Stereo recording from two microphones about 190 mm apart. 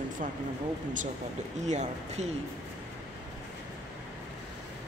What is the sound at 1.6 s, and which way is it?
Speech, 35° right (ahead or behind).